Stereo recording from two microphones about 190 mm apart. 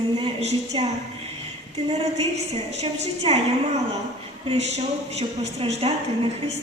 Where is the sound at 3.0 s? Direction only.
35° right (ahead or behind).